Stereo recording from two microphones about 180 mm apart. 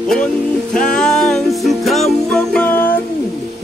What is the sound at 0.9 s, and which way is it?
Music, 5° left (ahead or behind).